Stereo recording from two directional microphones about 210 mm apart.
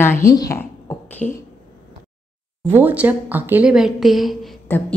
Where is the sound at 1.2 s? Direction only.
35° left (ahead or behind).